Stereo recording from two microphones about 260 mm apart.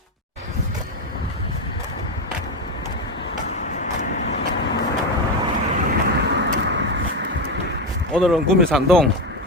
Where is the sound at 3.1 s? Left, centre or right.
Left.